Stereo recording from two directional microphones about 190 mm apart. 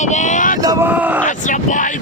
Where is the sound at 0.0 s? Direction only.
40° left (ahead or behind).